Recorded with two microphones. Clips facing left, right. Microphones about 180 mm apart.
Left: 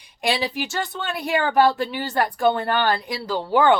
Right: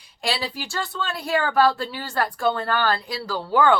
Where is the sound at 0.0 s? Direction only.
20° left (ahead or behind).